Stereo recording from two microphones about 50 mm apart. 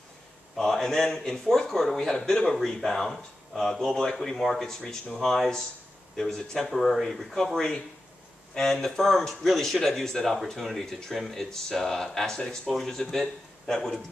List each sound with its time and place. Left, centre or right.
0.6 s a man's voice: centre
8.8 s a man's voice: centre